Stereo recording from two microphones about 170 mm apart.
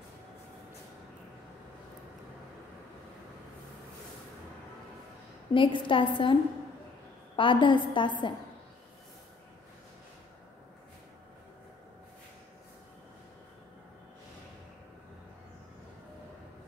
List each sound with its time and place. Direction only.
5.5 s a woman's voice: 30° left (ahead or behind)
7.3 s a woman's voice: 30° left (ahead or behind)